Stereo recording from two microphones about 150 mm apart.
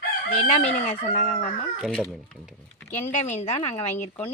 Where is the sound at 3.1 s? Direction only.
50° left (ahead or behind).